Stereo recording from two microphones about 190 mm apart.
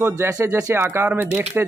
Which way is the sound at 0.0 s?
15° right (ahead or behind).